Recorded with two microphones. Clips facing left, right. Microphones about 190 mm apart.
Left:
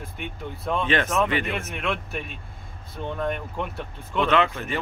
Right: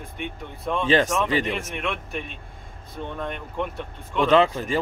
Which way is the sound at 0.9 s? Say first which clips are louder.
Right 3 dB; 35° right (ahead or behind).